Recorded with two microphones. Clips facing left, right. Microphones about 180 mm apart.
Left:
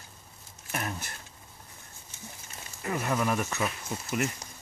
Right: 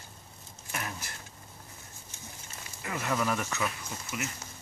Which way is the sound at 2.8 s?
30° left (ahead or behind).